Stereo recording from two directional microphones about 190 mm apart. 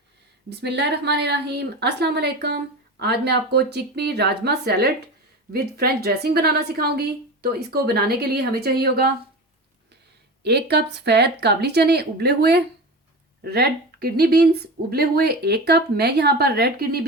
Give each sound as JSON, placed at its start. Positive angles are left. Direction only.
{"t": 0.5, "sound": "speech", "side_deg": -60}
{"t": 10.4, "sound": "speech", "side_deg": -60}